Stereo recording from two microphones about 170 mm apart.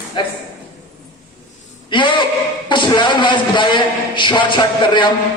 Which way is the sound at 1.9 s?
30° left (ahead or behind).